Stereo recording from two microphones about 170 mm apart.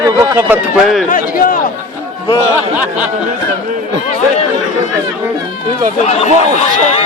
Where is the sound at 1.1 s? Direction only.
55° left (ahead or behind).